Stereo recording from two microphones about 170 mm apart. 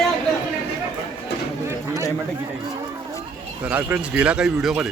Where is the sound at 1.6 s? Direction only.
20° right (ahead or behind).